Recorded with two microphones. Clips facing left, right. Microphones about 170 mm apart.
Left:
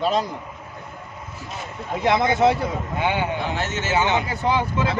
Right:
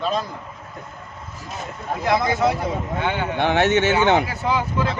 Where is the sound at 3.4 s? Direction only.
70° right (ahead or behind).